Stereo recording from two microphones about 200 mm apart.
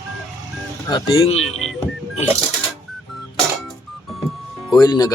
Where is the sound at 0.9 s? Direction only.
30° left (ahead or behind).